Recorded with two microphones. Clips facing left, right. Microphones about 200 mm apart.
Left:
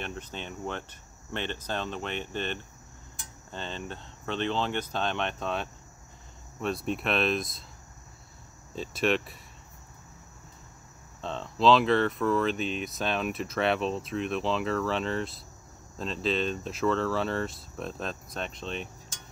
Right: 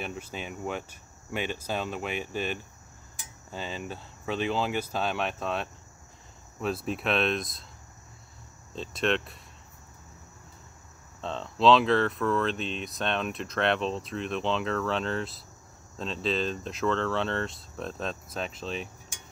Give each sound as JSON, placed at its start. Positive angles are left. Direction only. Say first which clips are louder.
{"t": 0.0, "sound": "speech", "louder": "right 1 dB", "side_deg": -5}
{"t": 8.7, "sound": "speech", "louder": "left 1 dB", "side_deg": 5}
{"t": 11.1, "sound": "speech", "louder": "right 1 dB", "side_deg": 0}